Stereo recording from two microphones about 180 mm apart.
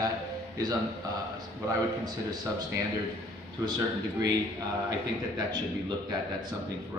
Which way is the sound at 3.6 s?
25° right (ahead or behind).